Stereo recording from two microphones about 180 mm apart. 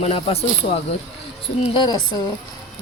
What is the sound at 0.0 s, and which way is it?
A woman's voice, 35° left (ahead or behind).